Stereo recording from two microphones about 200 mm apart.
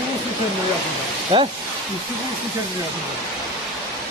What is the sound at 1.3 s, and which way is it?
Speech, 25° right (ahead or behind).